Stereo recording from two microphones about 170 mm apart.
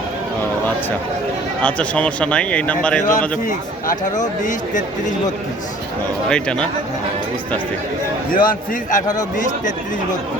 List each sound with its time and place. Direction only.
1.6 s a man's voice: 5° left (ahead or behind)
3.1 s speech: 50° left (ahead or behind)
6.2 s a man's voice: 5° left (ahead or behind)
8.3 s speech: 55° left (ahead or behind)